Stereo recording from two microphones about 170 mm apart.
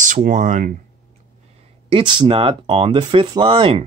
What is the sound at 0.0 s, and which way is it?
Speech, 50° right (ahead or behind).